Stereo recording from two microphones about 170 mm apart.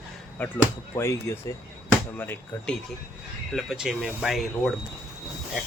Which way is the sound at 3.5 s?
Centre (ahead or behind).